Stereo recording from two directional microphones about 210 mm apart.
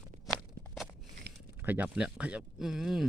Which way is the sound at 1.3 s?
50° right (ahead or behind).